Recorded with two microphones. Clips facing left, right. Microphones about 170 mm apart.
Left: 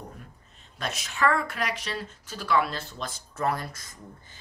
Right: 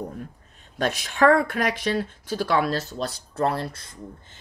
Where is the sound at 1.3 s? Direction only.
60° right (ahead or behind).